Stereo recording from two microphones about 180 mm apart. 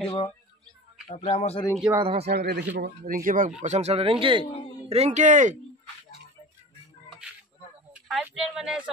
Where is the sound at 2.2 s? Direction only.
65° right (ahead or behind); by 5.5 s 45° right (ahead or behind).